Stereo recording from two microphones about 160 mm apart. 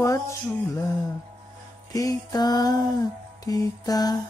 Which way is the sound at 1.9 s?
20° left (ahead or behind).